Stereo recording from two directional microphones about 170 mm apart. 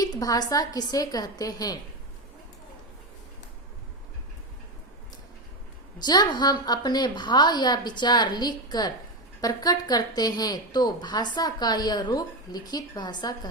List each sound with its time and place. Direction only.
0.0 s a woman's voice: 20° left (ahead or behind)
6.0 s a woman's voice: 25° left (ahead or behind)